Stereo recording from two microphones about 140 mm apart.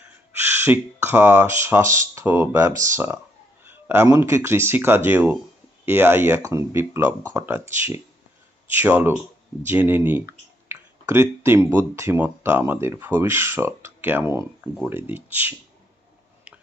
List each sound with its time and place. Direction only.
0.0 s speech: 15° right (ahead or behind)